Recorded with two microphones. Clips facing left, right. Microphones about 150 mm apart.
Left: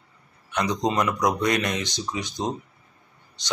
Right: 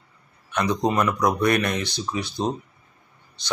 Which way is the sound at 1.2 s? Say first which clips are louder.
Right 3 dB; 15° left (ahead or behind).